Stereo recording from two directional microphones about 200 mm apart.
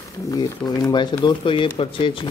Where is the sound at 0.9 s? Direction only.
20° left (ahead or behind).